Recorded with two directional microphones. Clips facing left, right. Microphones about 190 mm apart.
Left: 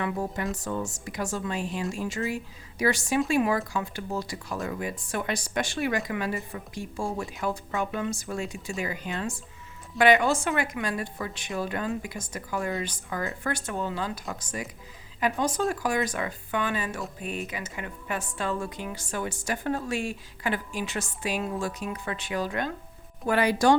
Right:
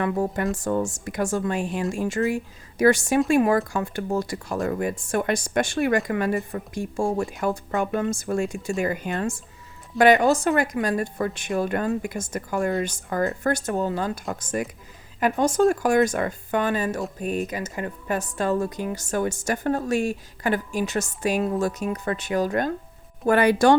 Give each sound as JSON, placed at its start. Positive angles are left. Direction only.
{"t": 0.0, "sound": "a woman's voice", "side_deg": -55}